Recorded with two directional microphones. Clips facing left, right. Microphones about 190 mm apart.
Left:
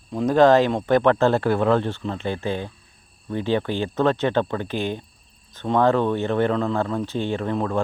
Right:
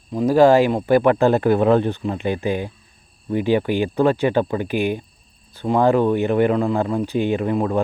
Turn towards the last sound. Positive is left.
turn(degrees=-15)  # may be behind; listen again after turning